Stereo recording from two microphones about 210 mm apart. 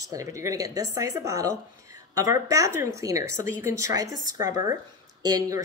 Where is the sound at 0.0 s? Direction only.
15° right (ahead or behind).